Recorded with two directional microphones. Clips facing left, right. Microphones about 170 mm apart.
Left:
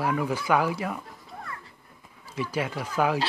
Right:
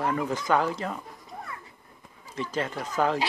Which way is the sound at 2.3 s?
10° left (ahead or behind).